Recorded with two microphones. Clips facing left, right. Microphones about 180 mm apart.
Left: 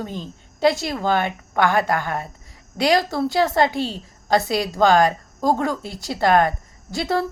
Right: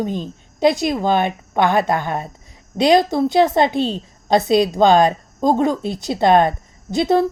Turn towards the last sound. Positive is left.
turn(degrees=-20)  # may be behind; listen again after turning